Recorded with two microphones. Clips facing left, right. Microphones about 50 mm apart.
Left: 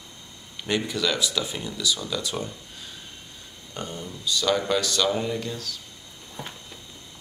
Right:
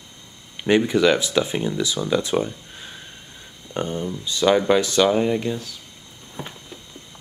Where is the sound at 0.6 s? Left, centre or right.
Right.